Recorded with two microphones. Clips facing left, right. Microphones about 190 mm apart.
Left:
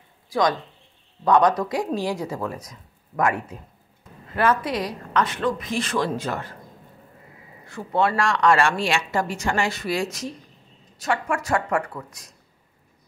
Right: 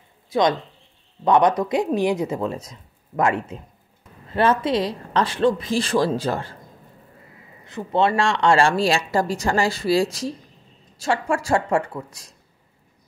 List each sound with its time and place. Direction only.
0.3 s speech: 20° right (ahead or behind)
7.6 s speech: 20° right (ahead or behind)